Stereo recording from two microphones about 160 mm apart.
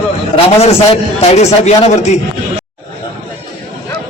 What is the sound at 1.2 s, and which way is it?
Speech, 40° left (ahead or behind).